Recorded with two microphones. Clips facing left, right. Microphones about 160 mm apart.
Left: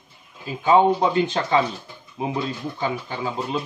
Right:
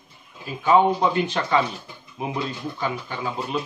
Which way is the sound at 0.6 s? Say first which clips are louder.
Left 1 dB; 25° left (ahead or behind).